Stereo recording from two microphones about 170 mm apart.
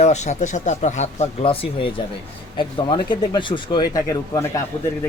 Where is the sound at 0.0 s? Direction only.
40° left (ahead or behind).